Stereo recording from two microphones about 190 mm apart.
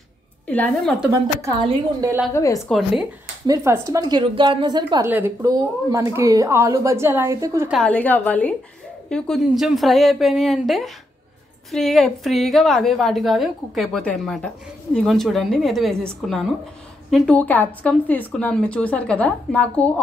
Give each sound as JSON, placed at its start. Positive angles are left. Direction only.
{"t": 0.5, "sound": "a woman's voice", "side_deg": 5}
{"t": 1.4, "sound": "speech", "side_deg": -20}
{"t": 2.3, "sound": "a woman's voice", "side_deg": 15}
{"t": 3.4, "sound": "a woman's voice", "side_deg": -15}
{"t": 7.7, "sound": "a woman's voice", "side_deg": 5}